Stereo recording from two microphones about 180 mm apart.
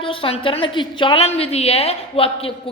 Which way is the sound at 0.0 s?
30° left (ahead or behind).